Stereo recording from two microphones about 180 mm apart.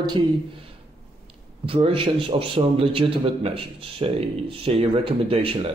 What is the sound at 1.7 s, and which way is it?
Speech, 30° right (ahead or behind).